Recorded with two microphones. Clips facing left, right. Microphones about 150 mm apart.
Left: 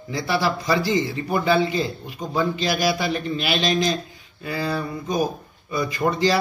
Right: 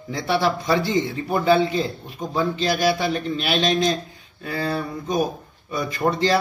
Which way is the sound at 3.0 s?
5° left (ahead or behind).